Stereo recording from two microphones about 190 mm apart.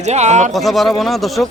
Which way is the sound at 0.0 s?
35° right (ahead or behind).